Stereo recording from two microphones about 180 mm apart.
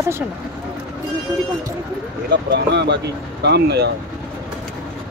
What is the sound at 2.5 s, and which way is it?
Speech, 70° right (ahead or behind).